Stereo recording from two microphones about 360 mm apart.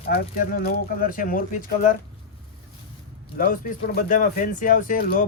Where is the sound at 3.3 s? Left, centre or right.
Left.